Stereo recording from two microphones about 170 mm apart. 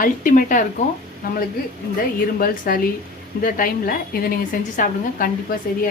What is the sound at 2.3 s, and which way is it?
A woman's voice, 55° left (ahead or behind).